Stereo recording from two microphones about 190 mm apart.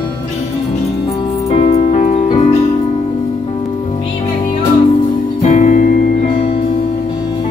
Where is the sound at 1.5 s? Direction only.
30° left (ahead or behind).